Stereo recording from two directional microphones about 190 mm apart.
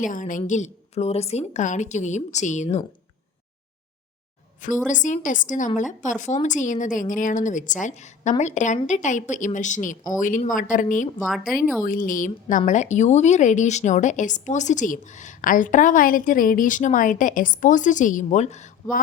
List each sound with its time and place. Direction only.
0.0 s a woman's voice: 45° left (ahead or behind)
4.9 s a woman's voice: 40° left (ahead or behind)
11.2 s speech: centre (ahead or behind)
11.9 s speech: 45° left (ahead or behind)